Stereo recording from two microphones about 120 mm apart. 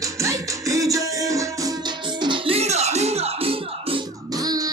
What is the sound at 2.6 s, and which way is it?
Music, 65° right (ahead or behind).